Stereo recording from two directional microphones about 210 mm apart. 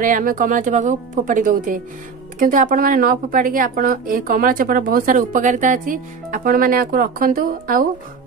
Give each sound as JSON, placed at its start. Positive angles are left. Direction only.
{"t": 0.0, "sound": "speech", "side_deg": -40}